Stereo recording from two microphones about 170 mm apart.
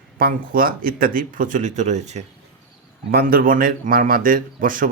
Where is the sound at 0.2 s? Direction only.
60° right (ahead or behind); by 2.2 s 40° right (ahead or behind).